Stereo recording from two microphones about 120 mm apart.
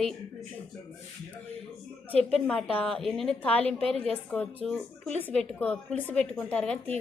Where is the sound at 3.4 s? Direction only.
15° left (ahead or behind).